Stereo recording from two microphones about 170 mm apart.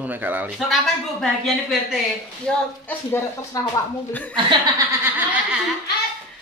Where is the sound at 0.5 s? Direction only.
Centre (ahead or behind).